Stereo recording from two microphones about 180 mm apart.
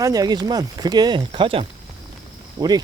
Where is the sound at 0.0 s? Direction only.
20° right (ahead or behind).